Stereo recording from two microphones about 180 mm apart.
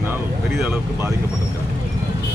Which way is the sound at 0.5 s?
10° right (ahead or behind).